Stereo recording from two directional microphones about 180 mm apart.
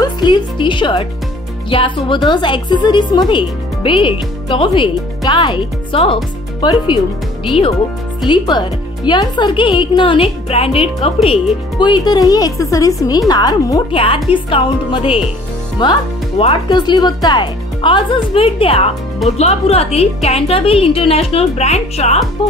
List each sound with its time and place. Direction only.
0.0 s a woman's voice: 25° left (ahead or behind)